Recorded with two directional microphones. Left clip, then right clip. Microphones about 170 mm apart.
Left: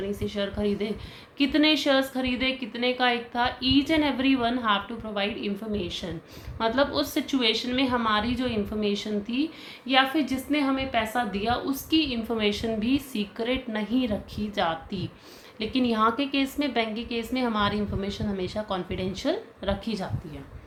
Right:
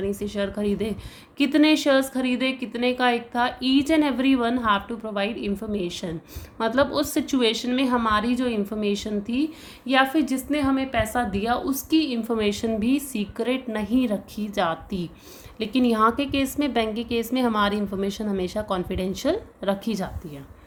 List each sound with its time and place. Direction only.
0.0 s a woman's voice: 50° right (ahead or behind)